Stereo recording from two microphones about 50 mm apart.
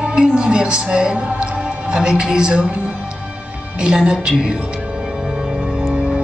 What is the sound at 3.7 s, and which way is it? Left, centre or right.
Speech, centre.